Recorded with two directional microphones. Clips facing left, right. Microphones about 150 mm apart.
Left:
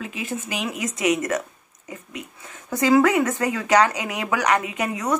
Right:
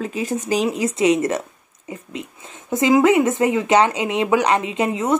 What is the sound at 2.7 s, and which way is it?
Speech, 20° right (ahead or behind).